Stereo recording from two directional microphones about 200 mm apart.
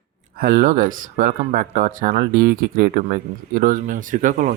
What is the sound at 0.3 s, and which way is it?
Speech, 45° right (ahead or behind).